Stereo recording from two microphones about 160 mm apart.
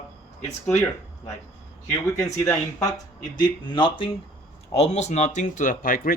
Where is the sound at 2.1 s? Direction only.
20° left (ahead or behind).